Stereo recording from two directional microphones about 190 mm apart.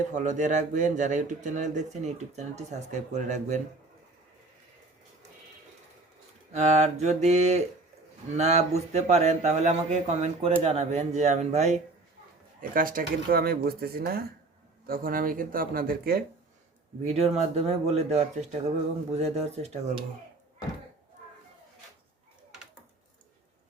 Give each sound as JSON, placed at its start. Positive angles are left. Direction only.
{"t": 0.1, "sound": "speech", "side_deg": -40}
{"t": 6.5, "sound": "speech", "side_deg": -35}
{"t": 17.0, "sound": "speech", "side_deg": -35}